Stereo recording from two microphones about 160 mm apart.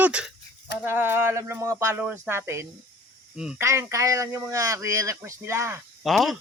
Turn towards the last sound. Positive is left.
turn(degrees=0)  # may be behind; listen again after turning